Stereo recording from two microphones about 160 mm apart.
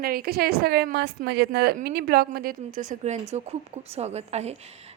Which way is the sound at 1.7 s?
70° right (ahead or behind).